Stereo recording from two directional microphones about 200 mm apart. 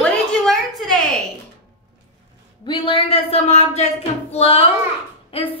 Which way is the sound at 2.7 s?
25° left (ahead or behind).